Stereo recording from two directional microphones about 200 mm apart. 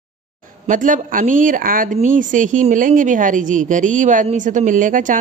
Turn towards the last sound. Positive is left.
turn(degrees=-40)  # may be behind; listen again after turning